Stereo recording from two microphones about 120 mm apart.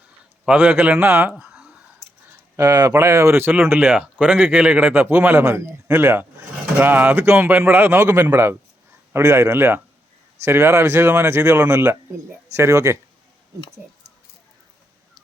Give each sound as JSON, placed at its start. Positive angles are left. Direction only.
{"t": 0.4, "sound": "speech", "side_deg": -15}
{"t": 1.4, "sound": "a sound", "side_deg": -5}
{"t": 2.6, "sound": "speech", "side_deg": -30}